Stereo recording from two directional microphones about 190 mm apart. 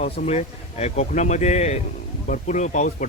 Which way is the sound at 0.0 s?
35° left (ahead or behind).